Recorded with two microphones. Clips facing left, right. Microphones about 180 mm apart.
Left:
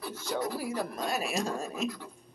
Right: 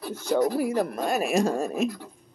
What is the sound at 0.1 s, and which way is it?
Speech, 50° right (ahead or behind).